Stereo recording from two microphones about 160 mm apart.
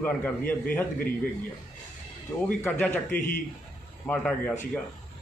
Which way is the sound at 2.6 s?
10° left (ahead or behind).